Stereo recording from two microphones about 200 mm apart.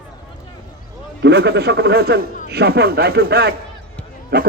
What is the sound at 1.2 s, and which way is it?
A man's voice, 55° right (ahead or behind).